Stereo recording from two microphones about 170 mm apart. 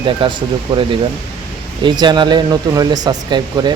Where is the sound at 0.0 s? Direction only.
30° right (ahead or behind).